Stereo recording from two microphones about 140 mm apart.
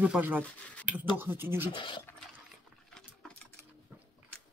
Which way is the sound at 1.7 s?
35° left (ahead or behind).